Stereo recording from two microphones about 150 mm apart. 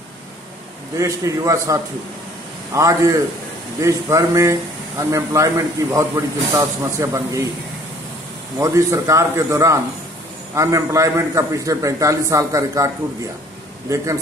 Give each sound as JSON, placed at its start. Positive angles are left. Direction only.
{"t": 0.9, "sound": "speech", "side_deg": -20}
{"t": 8.5, "sound": "speech", "side_deg": -20}